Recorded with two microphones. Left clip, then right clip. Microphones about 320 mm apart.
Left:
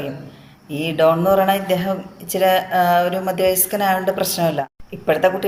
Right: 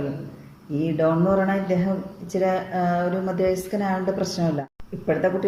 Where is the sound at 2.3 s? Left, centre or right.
Left.